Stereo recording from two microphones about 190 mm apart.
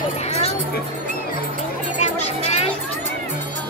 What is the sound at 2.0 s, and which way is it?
Music, 35° left (ahead or behind).